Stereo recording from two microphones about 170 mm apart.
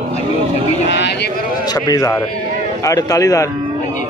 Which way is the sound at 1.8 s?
20° left (ahead or behind).